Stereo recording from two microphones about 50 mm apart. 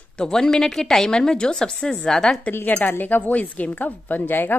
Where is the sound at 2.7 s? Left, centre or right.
Left.